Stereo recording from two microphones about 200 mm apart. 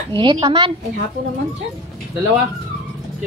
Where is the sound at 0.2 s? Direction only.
25° right (ahead or behind).